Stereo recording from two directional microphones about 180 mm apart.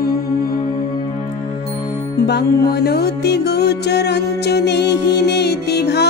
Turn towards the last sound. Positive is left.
turn(degrees=65)  # may be behind; listen again after turning